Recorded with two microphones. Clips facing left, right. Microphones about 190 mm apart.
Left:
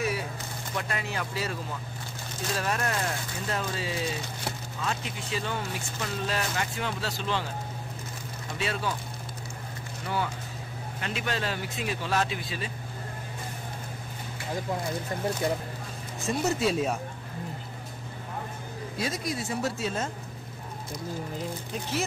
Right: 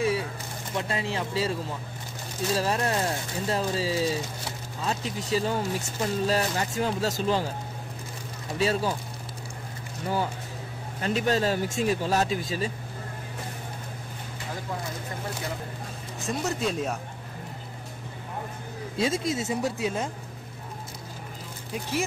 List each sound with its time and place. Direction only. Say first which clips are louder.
0.7 s speech: right 4 dB; 25° right (ahead or behind)
8.5 s speech: right 6 dB; 35° right (ahead or behind)
10.0 s speech: right 3 dB; 35° right (ahead or behind)
16.3 s speech: left 2 dB; 5° left (ahead or behind)
18.9 s speech: right 5 dB; 25° right (ahead or behind)